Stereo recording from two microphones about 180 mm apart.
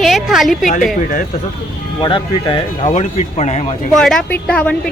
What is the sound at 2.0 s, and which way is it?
Speech, 25° left (ahead or behind).